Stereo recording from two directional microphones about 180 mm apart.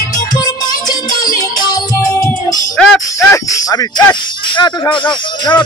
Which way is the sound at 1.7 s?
20° left (ahead or behind).